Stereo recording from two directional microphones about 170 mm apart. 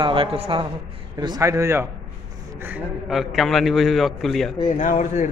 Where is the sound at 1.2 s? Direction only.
20° right (ahead or behind).